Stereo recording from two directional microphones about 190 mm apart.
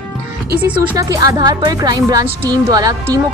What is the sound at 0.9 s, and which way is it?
Speech, 20° right (ahead or behind).